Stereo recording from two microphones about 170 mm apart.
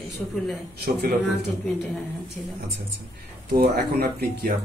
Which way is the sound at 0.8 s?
70° right (ahead or behind).